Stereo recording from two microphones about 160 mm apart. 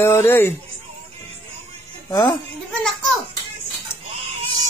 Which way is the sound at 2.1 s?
25° left (ahead or behind).